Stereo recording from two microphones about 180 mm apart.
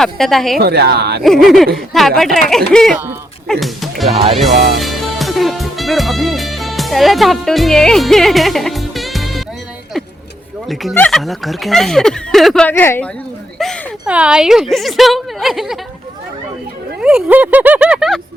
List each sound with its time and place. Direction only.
0.0 s a woman's voice: centre (ahead or behind)
0.6 s speech: 65° right (ahead or behind)
1.2 s a woman's voice: centre (ahead or behind)
4.1 s speech: 30° right (ahead or behind)
4.8 s music: centre (ahead or behind)
10.9 s a woman's voice: 5° left (ahead or behind)
13.6 s a woman's voice: centre (ahead or behind)
17.0 s speech: 5° right (ahead or behind)